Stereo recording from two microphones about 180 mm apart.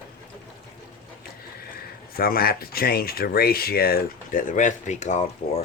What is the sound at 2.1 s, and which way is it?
Speech, 55° left (ahead or behind).